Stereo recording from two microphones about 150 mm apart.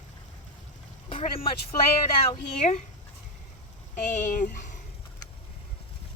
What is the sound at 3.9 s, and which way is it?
Speech, 55° left (ahead or behind).